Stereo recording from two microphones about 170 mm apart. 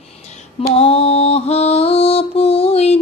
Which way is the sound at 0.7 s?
35° left (ahead or behind).